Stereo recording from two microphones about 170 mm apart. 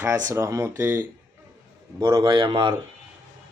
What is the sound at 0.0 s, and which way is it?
Speech, 15° right (ahead or behind).